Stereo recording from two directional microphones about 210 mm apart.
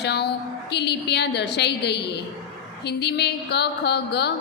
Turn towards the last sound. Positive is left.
turn(degrees=50)  # may be behind; listen again after turning